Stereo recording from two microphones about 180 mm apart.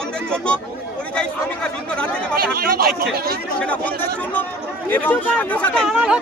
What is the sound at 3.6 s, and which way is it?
Speech, 10° left (ahead or behind).